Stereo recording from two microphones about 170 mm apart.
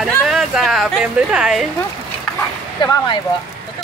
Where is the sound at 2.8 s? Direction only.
20° left (ahead or behind).